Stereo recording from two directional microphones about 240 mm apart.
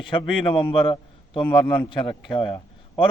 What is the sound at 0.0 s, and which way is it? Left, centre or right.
A man's voice, centre.